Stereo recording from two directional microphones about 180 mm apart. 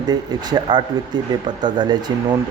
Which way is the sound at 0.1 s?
25° right (ahead or behind).